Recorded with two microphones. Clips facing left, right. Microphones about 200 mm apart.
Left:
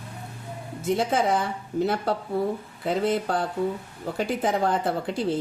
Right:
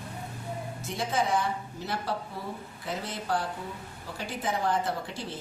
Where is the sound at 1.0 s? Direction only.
60° left (ahead or behind).